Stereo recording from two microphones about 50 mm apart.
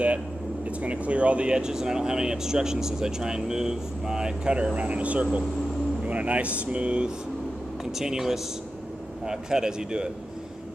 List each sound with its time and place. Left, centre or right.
0.7 s speech: right
8.0 s speech: centre